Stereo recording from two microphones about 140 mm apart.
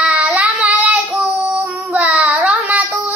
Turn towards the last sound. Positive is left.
turn(degrees=-10)  # may be behind; listen again after turning